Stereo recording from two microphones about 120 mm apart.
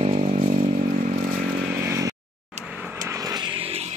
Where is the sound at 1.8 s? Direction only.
25° right (ahead or behind).